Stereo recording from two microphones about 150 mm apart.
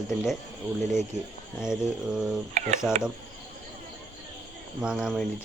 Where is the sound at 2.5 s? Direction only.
55° right (ahead or behind).